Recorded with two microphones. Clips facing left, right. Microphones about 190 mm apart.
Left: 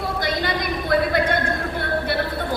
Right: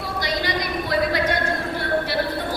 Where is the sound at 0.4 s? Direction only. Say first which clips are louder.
Left 1 dB; 55° left (ahead or behind).